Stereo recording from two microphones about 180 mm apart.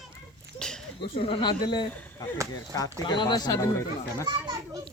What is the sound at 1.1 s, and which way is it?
Speech, 30° left (ahead or behind).